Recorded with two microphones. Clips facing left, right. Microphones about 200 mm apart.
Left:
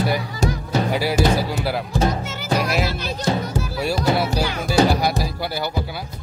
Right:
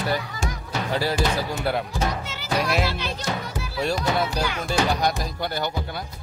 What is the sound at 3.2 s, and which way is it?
Music, 35° left (ahead or behind).